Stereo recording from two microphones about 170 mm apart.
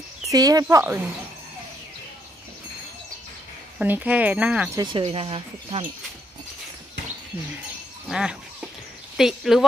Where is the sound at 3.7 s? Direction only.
10° right (ahead or behind).